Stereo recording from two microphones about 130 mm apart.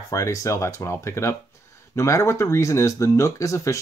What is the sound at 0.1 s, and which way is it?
Speech, 25° left (ahead or behind).